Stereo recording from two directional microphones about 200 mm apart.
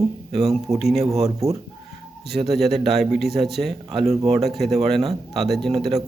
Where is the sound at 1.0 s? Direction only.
30° right (ahead or behind).